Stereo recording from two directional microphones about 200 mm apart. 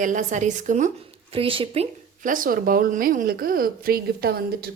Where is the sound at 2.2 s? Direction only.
45° right (ahead or behind).